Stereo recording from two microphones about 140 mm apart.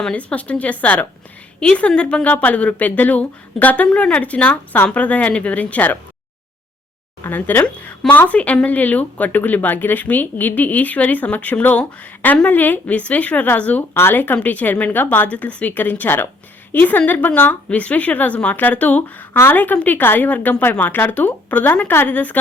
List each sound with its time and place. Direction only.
0.0 s speech: 10° left (ahead or behind)
7.3 s speech: 15° left (ahead or behind)